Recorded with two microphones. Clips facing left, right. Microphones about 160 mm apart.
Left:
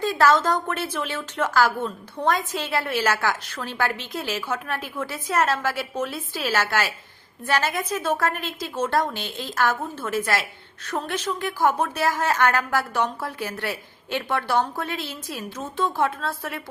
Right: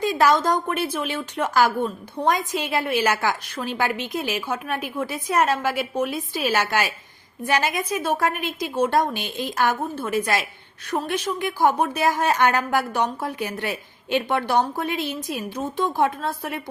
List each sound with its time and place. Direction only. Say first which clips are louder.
0.0 s a woman's voice: even; 15° right (ahead or behind)